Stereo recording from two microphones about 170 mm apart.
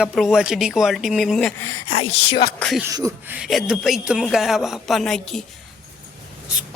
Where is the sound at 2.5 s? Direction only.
5° left (ahead or behind).